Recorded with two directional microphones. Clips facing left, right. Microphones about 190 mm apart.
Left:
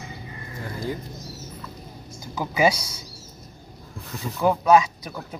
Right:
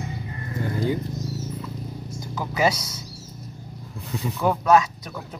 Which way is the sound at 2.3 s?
10° left (ahead or behind).